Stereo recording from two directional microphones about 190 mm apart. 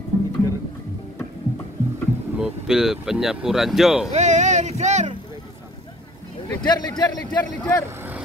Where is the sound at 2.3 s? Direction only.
5° right (ahead or behind).